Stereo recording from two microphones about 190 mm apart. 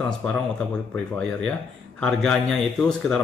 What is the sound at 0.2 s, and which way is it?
Speech, 5° left (ahead or behind).